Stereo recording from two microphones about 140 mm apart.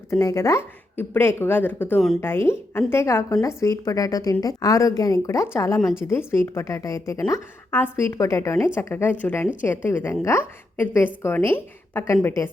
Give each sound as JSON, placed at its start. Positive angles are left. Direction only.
{"t": 0.1, "sound": "a woman's voice", "side_deg": 20}